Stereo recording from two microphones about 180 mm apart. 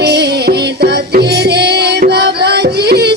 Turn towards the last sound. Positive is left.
turn(degrees=-65)  # may be behind; listen again after turning